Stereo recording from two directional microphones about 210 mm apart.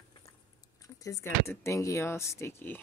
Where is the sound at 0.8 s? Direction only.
15° left (ahead or behind).